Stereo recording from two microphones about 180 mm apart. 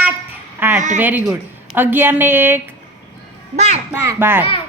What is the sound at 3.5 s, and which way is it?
Speech, 40° right (ahead or behind).